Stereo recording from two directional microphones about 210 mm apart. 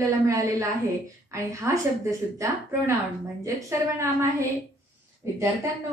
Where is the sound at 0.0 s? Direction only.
15° right (ahead or behind).